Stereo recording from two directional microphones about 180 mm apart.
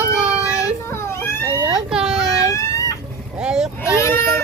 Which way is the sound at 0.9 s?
15° left (ahead or behind).